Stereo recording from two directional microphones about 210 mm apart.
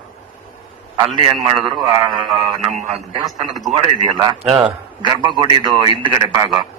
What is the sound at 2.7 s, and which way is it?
A man's voice, 30° right (ahead or behind).